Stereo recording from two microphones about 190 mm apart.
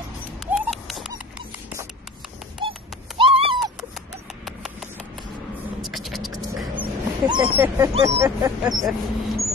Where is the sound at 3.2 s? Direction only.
30° right (ahead or behind).